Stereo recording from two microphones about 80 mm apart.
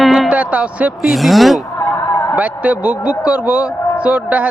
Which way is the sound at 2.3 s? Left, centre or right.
Centre.